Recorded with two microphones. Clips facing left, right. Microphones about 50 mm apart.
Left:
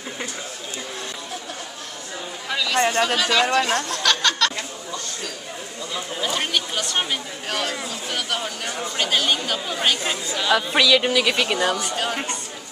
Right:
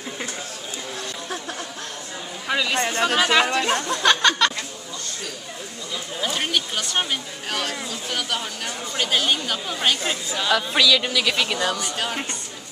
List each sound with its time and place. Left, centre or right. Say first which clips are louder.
2.4 s a sound: right 1 dB; centre
3.2 s speech: even; right
6.2 s speech: even; centre
10.5 s speech: left 2 dB; centre
12.0 s speech: left 2 dB; centre